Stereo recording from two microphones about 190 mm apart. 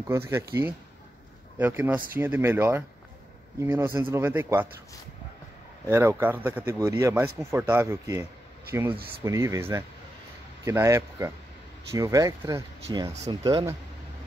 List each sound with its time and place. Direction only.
0.1 s speech: 10° right (ahead or behind)
5.9 s speech: 15° right (ahead or behind)